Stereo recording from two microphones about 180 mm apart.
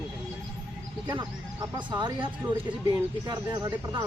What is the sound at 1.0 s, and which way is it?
Speech, 20° right (ahead or behind).